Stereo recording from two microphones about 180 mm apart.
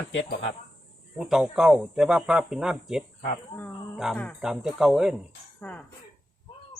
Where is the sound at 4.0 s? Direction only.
Centre (ahead or behind).